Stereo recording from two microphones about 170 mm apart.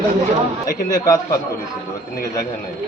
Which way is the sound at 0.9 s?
20° left (ahead or behind).